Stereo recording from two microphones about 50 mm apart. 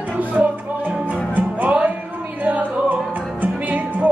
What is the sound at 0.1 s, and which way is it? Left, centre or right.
Music, right.